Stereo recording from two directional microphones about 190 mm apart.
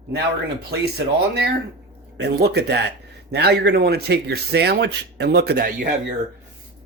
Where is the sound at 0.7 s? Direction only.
60° right (ahead or behind).